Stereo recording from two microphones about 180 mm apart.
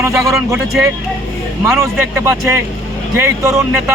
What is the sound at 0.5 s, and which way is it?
Speech, centre (ahead or behind).